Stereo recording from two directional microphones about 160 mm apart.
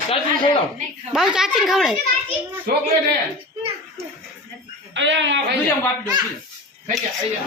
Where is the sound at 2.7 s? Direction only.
70° right (ahead or behind).